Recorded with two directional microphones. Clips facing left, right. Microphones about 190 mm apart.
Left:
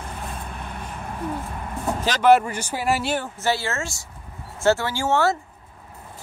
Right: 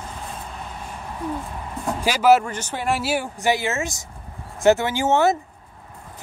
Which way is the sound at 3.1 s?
15° right (ahead or behind).